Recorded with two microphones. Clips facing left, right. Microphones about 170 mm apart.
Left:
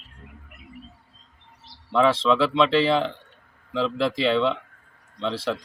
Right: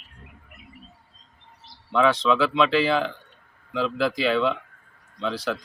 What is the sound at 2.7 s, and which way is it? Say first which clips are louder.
Speech: left 2 dB; 30° left (ahead or behind).